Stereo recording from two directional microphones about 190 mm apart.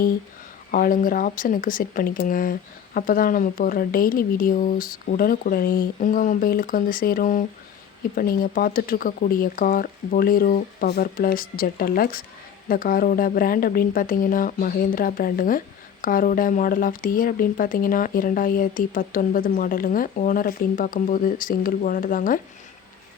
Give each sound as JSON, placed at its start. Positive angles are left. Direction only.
{"t": 0.7, "sound": "a woman's voice", "side_deg": 45}